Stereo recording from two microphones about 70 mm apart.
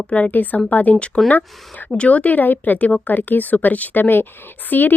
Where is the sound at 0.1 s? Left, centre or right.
Left.